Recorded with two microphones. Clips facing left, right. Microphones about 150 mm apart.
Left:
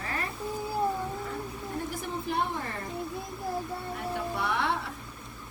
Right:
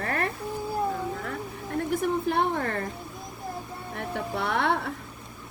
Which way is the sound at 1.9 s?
60° right (ahead or behind).